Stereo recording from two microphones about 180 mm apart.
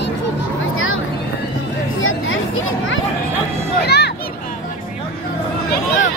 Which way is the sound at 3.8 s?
65° left (ahead or behind).